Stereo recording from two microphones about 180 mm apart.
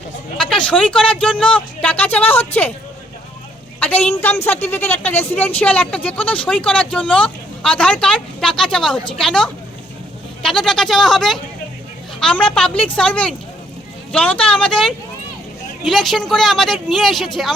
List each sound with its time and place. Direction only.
0.3 s speech: 5° left (ahead or behind)
3.8 s a sound: 10° left (ahead or behind)
4.1 s speech: 10° left (ahead or behind)
12.7 s a woman's voice: 30° left (ahead or behind)
13.0 s speech: 5° left (ahead or behind)